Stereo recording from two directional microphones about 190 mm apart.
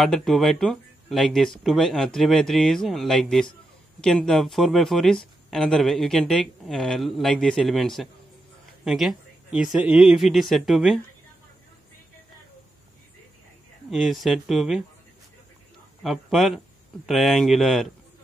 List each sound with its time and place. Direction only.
0.0 s speech: centre (ahead or behind)
13.8 s speech: centre (ahead or behind)
16.0 s speech: centre (ahead or behind)